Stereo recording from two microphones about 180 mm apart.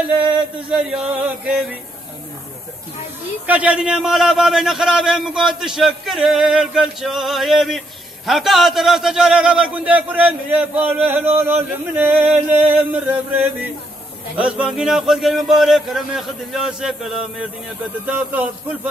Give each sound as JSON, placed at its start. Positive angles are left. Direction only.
{"t": 0.7, "sound": "a man's voice", "side_deg": -5}
{"t": 3.4, "sound": "a man's voice", "side_deg": -5}
{"t": 11.3, "sound": "male singing", "side_deg": -10}
{"t": 14.3, "sound": "a man's voice", "side_deg": -5}
{"t": 18.0, "sound": "male singing", "side_deg": -10}